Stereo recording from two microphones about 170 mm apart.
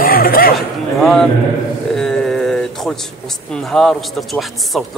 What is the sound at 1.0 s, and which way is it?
Speech, 5° left (ahead or behind).